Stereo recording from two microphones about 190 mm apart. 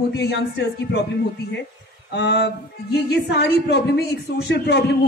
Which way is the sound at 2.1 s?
65° left (ahead or behind).